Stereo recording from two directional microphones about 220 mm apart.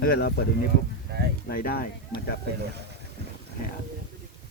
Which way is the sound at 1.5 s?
45° left (ahead or behind).